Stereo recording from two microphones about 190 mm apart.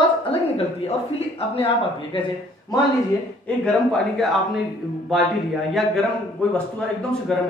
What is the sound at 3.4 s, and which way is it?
A man's voice, 5° left (ahead or behind).